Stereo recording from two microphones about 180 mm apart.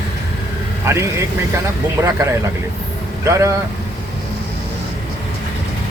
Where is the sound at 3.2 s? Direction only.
15° right (ahead or behind).